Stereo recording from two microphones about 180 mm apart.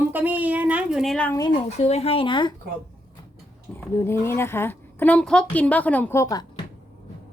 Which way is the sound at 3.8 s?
15° left (ahead or behind).